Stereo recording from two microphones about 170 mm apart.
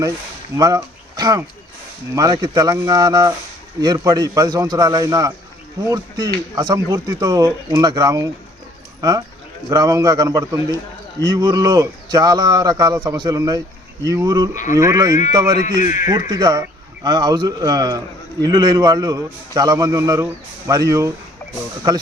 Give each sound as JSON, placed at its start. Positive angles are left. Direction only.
{"t": 0.5, "sound": "speech", "side_deg": -20}
{"t": 14.5, "sound": "speech", "side_deg": 50}
{"t": 14.8, "sound": "speech", "side_deg": -20}
{"t": 15.8, "sound": "speech", "side_deg": 50}
{"t": 16.3, "sound": "speech", "side_deg": -25}